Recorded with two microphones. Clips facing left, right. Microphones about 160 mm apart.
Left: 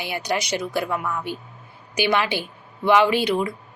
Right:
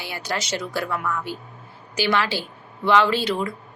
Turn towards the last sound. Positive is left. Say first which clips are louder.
# left 2 dB
turn(degrees=15)  # may be behind; listen again after turning